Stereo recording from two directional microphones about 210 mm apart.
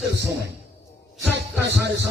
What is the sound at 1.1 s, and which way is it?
Music, 5° right (ahead or behind).